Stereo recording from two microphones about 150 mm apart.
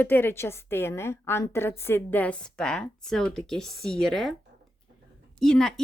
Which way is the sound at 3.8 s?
90° right.